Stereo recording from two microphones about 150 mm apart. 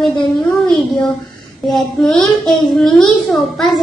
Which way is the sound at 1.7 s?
Centre (ahead or behind).